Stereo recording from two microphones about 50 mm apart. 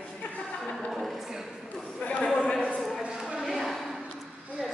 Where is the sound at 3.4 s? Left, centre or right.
Centre.